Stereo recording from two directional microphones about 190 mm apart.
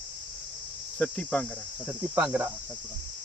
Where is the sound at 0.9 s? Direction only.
5° left (ahead or behind).